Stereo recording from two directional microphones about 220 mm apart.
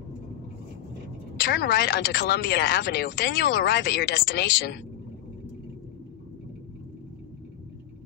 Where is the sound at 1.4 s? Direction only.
50° left (ahead or behind).